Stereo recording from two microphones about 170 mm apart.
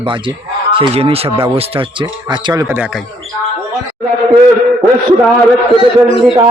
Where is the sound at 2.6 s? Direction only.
10° right (ahead or behind).